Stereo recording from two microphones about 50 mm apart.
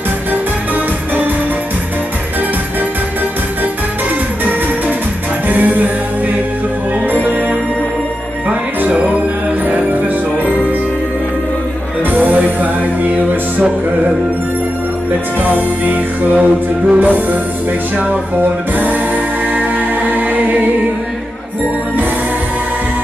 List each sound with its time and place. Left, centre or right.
5.5 s music: right
8.5 s music: right
12.0 s music: right
15.4 s music: right